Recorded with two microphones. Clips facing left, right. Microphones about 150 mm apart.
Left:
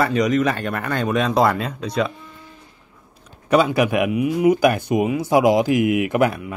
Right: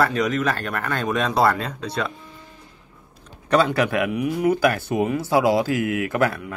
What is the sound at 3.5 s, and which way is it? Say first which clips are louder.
Speech: left 2 dB; 10° left (ahead or behind).